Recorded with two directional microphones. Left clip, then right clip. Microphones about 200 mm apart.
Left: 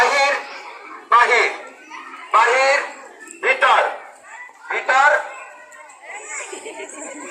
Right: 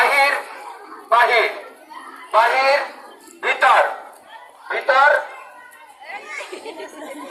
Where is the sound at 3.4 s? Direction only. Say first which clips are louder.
Even; 20° right (ahead or behind).